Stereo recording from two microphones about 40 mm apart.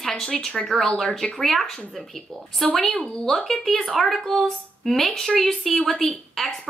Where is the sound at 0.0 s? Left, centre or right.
Centre.